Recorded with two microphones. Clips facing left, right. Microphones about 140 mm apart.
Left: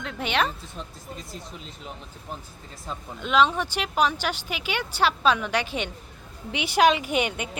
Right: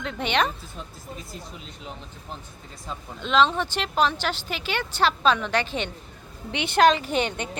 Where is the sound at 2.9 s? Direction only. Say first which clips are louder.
Even; 10° left (ahead or behind).